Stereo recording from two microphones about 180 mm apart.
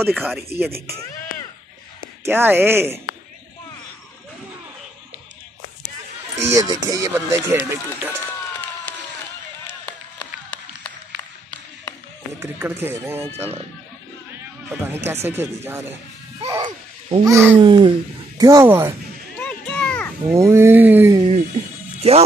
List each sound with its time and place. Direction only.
0.0 s speech: 10° right (ahead or behind)
2.2 s speech: 10° right (ahead or behind)
6.5 s speech: 20° right (ahead or behind)
12.4 s speech: 10° right (ahead or behind)
14.9 s speech: 15° right (ahead or behind)
16.3 s a child's voice: 25° right (ahead or behind)
17.6 s speech: 25° right (ahead or behind)
19.4 s music: 5° left (ahead or behind)
20.3 s speech: 15° right (ahead or behind)
22.0 s speech: 35° right (ahead or behind)